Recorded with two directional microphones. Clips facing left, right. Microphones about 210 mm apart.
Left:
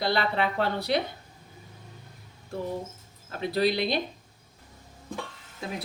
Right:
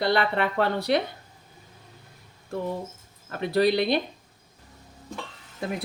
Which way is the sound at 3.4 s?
55° right (ahead or behind).